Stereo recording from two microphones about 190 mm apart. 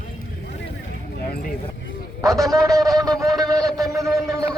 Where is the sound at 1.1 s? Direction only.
55° left (ahead or behind).